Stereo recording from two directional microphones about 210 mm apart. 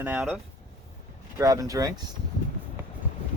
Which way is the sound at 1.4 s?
15° right (ahead or behind).